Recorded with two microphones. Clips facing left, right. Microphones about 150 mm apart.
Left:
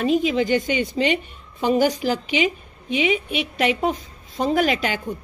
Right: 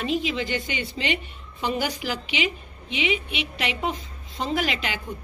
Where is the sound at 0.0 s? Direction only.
45° left (ahead or behind).